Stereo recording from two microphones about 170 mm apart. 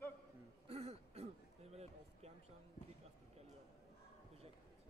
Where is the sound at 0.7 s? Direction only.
40° right (ahead or behind).